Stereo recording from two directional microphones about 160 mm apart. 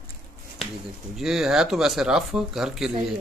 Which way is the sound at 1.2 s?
5° right (ahead or behind).